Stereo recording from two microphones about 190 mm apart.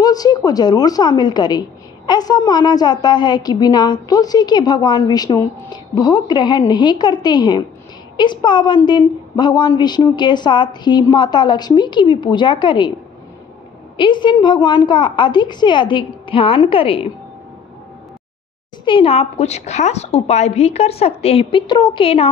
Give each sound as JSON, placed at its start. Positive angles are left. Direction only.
{"t": 0.0, "sound": "a woman's voice", "side_deg": 20}
{"t": 13.9, "sound": "a woman's voice", "side_deg": 25}
{"t": 18.9, "sound": "a woman's voice", "side_deg": 30}